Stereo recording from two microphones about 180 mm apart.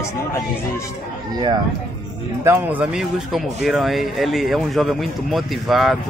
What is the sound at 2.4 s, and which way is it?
Speech, 10° right (ahead or behind).